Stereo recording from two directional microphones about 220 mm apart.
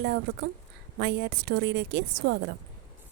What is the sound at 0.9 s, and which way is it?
A woman's voice, 50° right (ahead or behind).